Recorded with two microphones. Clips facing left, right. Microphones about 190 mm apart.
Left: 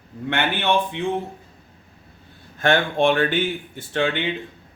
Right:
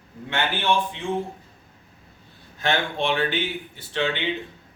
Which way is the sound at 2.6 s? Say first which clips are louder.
Left 6 dB; 50° left (ahead or behind).